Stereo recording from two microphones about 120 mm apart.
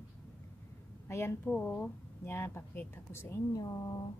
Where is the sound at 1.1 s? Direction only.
20° left (ahead or behind).